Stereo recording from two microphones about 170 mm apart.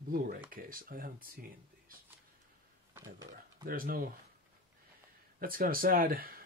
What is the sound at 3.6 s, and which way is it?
Speech, 60° right (ahead or behind).